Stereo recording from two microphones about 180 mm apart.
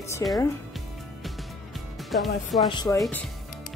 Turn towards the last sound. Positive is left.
turn(degrees=5)  # may be behind; listen again after turning